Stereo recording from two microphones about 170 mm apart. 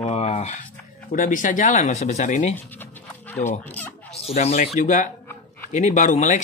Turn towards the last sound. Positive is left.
turn(degrees=45)  # may be behind; listen again after turning